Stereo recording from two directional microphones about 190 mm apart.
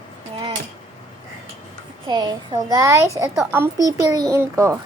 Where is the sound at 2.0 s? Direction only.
25° right (ahead or behind).